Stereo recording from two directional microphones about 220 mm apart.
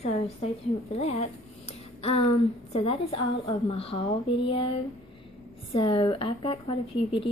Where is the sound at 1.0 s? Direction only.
30° left (ahead or behind).